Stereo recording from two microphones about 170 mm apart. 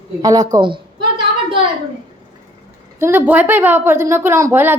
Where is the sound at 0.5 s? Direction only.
30° right (ahead or behind).